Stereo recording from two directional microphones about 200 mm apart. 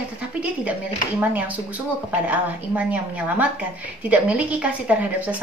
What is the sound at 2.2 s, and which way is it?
A woman's voice, 5° right (ahead or behind).